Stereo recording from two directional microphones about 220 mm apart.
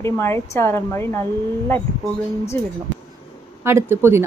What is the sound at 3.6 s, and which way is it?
Speech, 10° right (ahead or behind).